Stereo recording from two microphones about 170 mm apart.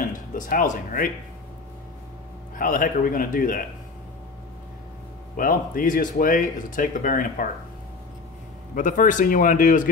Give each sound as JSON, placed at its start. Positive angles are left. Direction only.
{"t": 0.0, "sound": "speech", "side_deg": 50}
{"t": 2.6, "sound": "speech", "side_deg": 55}
{"t": 5.3, "sound": "speech", "side_deg": 55}
{"t": 8.7, "sound": "speech", "side_deg": 50}